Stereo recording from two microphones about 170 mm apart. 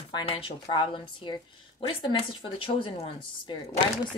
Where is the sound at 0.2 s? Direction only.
30° left (ahead or behind).